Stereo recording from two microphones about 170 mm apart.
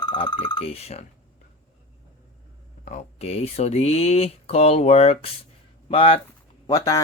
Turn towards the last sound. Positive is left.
turn(degrees=20)  # may be behind; listen again after turning